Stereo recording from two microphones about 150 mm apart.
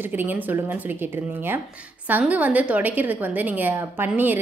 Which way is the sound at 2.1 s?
10° right (ahead or behind).